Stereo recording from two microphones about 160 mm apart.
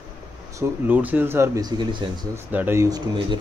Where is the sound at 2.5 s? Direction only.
15° right (ahead or behind).